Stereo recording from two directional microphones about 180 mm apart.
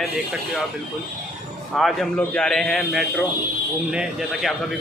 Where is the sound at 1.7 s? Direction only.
Centre (ahead or behind).